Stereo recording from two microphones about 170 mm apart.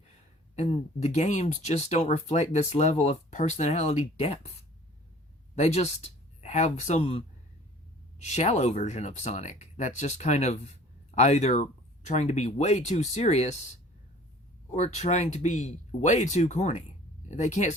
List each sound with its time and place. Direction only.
0.5 s speech: 40° left (ahead or behind)
5.5 s speech: 40° left (ahead or behind)
14.7 s speech: 40° left (ahead or behind)